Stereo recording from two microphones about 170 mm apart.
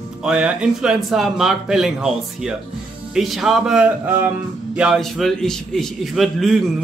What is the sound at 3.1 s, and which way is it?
A man's voice, centre (ahead or behind).